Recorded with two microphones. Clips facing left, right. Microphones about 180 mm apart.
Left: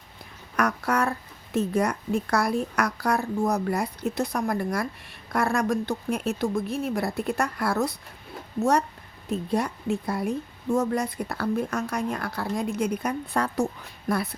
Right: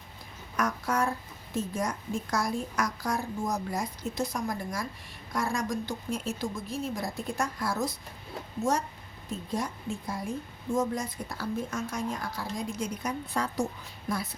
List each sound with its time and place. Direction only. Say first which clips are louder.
0.5 s a woman's voice: left 4 dB; 65° left (ahead or behind)
9.3 s a woman's voice: left 7 dB; 65° left (ahead or behind)